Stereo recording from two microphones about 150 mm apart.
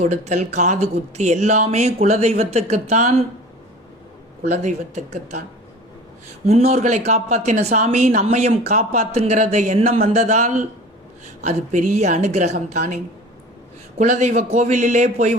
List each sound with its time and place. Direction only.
0.0 s speech: 50° right (ahead or behind)
4.4 s speech: 50° right (ahead or behind)
6.4 s speech: 45° right (ahead or behind)
14.0 s speech: 50° right (ahead or behind)